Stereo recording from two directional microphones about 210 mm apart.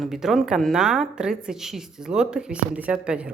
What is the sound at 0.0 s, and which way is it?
Speech, centre (ahead or behind).